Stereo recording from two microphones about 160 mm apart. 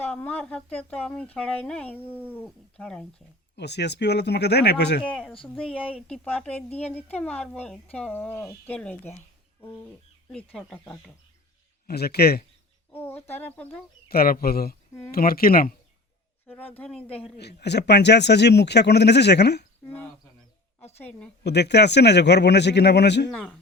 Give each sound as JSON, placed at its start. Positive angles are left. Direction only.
{"t": 0.0, "sound": "speech", "side_deg": 10}
{"t": 2.0, "sound": "speech", "side_deg": -10}
{"t": 2.3, "sound": "speech", "side_deg": 10}
{"t": 3.5, "sound": "speech", "side_deg": 90}
{"t": 5.5, "sound": "speech", "side_deg": 5}
{"t": 10.3, "sound": "speech", "side_deg": 5}
{"t": 11.9, "sound": "a man's voice", "side_deg": 80}
{"t": 12.9, "sound": "speech", "side_deg": 15}
{"t": 14.1, "sound": "speech", "side_deg": 70}
{"t": 16.5, "sound": "speech", "side_deg": 10}
{"t": 17.3, "sound": "speech", "side_deg": 90}
{"t": 21.4, "sound": "speech", "side_deg": 90}
{"t": 23.3, "sound": "speech", "side_deg": 10}